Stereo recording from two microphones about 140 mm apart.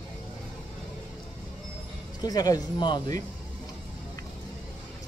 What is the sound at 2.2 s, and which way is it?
Speech, 25° left (ahead or behind).